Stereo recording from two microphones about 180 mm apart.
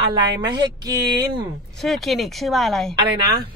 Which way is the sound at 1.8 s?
Centre (ahead or behind).